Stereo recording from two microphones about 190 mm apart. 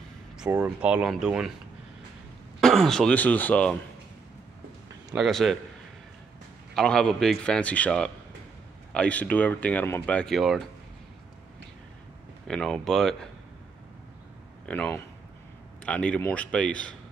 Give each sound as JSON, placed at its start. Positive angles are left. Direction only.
{"t": 0.5, "sound": "a man's voice", "side_deg": -5}
{"t": 2.6, "sound": "a man's voice", "side_deg": 0}
{"t": 5.1, "sound": "a man's voice", "side_deg": 0}
{"t": 6.7, "sound": "a man's voice", "side_deg": 5}
{"t": 12.4, "sound": "a man's voice", "side_deg": 5}
{"t": 14.7, "sound": "speech", "side_deg": 5}